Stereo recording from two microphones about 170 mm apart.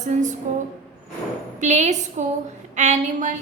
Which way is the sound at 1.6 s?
45° right (ahead or behind).